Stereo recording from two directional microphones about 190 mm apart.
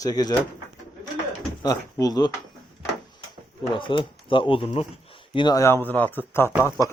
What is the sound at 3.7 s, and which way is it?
Speech, 25° left (ahead or behind).